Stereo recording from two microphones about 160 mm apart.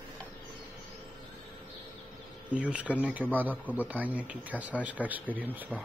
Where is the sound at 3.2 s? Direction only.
10° left (ahead or behind).